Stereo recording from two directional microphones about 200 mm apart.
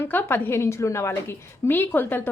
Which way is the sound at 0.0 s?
10° left (ahead or behind).